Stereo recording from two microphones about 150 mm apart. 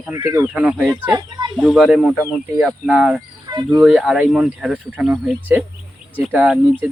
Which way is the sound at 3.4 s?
30° right (ahead or behind).